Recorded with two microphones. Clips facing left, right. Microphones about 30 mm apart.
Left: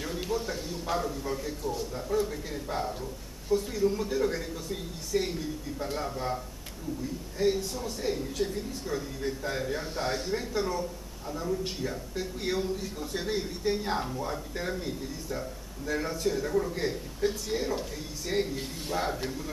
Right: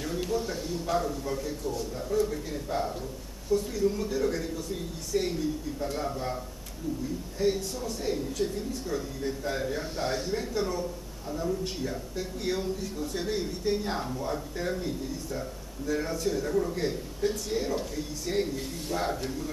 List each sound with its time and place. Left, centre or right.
0.0 s a man's voice: centre